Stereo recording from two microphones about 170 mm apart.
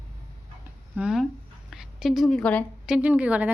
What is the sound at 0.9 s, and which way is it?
A woman's voice, 5° right (ahead or behind).